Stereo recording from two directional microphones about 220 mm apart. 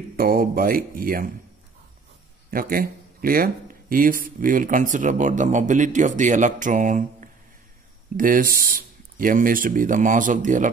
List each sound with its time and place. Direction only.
0.1 s speech: 40° right (ahead or behind)
2.5 s speech: 40° right (ahead or behind)